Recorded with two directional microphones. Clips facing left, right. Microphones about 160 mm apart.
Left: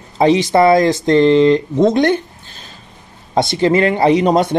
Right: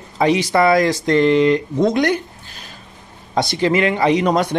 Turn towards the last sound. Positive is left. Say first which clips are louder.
# left 4 dB
turn(degrees=25)  # may be behind; listen again after turning